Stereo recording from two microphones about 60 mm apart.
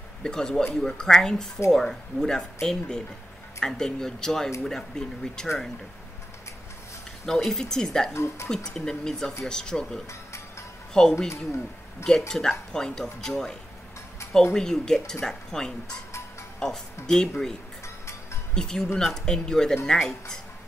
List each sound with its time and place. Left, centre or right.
0.2 s speech: centre
7.2 s speech: centre
8.1 s speech: left
8.7 s speech: centre
17.8 s music: left
18.5 s speech: centre